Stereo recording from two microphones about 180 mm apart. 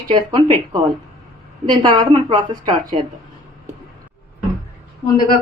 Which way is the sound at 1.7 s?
25° right (ahead or behind).